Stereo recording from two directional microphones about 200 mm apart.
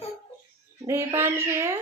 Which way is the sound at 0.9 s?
15° right (ahead or behind).